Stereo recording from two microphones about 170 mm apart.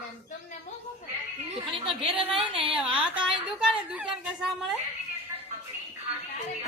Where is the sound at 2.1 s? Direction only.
5° right (ahead or behind).